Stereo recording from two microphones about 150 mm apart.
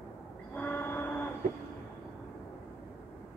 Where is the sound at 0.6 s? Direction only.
10° left (ahead or behind).